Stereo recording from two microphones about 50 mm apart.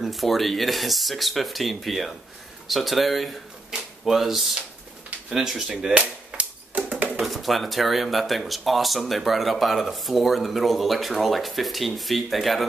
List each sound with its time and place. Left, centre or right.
0.0 s speech: centre
5.9 s typewriter: right
7.2 s speech: centre